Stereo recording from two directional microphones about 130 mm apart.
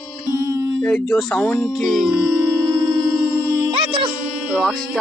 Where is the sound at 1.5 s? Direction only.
15° left (ahead or behind).